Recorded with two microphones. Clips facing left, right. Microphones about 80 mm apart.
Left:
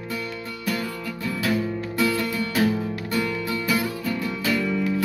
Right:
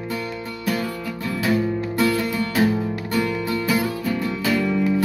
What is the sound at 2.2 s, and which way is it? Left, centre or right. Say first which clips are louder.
Music: right 3 dB; right.